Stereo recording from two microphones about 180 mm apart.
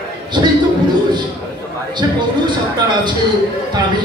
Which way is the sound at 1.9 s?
25° right (ahead or behind).